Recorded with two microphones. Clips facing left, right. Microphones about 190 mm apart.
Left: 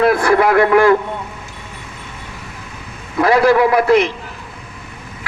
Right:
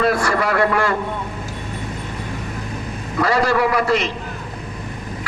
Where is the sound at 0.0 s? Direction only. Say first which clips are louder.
Left 6 dB; 60° left (ahead or behind).